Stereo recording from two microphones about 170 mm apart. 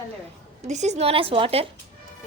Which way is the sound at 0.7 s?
40° right (ahead or behind).